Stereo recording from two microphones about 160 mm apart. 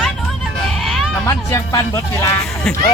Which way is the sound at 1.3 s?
20° left (ahead or behind).